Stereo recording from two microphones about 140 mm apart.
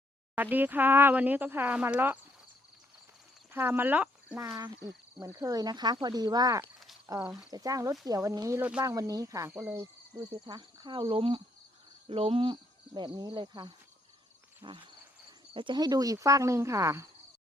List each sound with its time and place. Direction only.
0.3 s speech: 15° right (ahead or behind)
3.5 s speech: 15° right (ahead or behind)
4.4 s speech: 25° right (ahead or behind)
6.7 s a sound: centre (ahead or behind)
7.2 s speech: 10° right (ahead or behind)
7.5 s speech: 25° right (ahead or behind)
9.5 s speech: 10° right (ahead or behind)
10.2 s speech: 30° right (ahead or behind)